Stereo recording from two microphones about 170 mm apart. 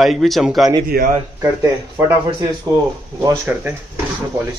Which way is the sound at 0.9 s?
65° right (ahead or behind).